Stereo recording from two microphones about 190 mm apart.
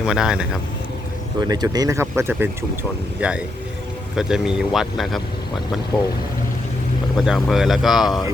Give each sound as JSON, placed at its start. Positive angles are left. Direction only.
{"t": 0.0, "sound": "speech", "side_deg": -5}
{"t": 1.4, "sound": "speech", "side_deg": -20}
{"t": 7.2, "sound": "speech", "side_deg": 0}